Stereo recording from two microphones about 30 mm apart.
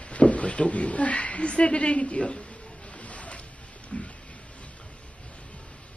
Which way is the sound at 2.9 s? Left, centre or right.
Left.